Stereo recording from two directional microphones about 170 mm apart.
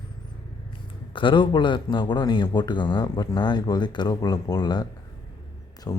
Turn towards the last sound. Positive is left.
turn(degrees=20)  # may be behind; listen again after turning